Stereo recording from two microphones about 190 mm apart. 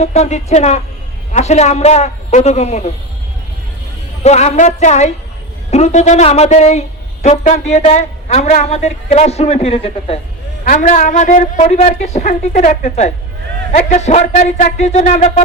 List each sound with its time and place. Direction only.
0.0 s speech: 35° left (ahead or behind)
4.2 s speech: 35° left (ahead or behind)
10.7 s speech: 45° left (ahead or behind)